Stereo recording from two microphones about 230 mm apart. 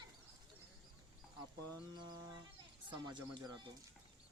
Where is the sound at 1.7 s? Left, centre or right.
Centre.